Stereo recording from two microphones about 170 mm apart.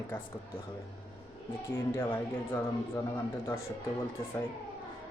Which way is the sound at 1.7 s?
15° left (ahead or behind).